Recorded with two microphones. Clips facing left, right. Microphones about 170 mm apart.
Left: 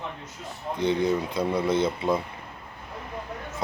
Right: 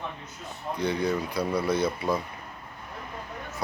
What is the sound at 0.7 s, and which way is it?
Speech, 20° left (ahead or behind).